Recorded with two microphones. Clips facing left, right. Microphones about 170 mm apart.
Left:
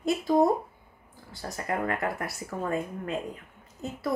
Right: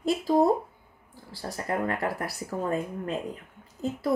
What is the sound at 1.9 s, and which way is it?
Speech, 30° right (ahead or behind).